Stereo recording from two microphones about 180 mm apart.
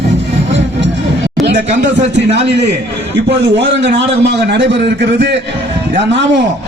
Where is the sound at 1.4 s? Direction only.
70° right (ahead or behind).